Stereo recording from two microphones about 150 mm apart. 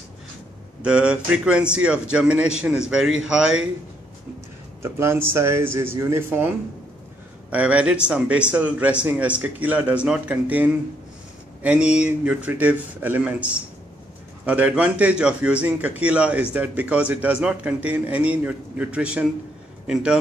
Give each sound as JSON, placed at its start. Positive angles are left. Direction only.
{"t": 0.8, "sound": "a man's voice", "side_deg": -5}
{"t": 4.8, "sound": "a man's voice", "side_deg": -15}
{"t": 7.5, "sound": "a man's voice", "side_deg": -10}